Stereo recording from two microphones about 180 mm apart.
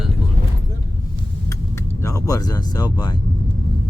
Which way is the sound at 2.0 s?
20° left (ahead or behind).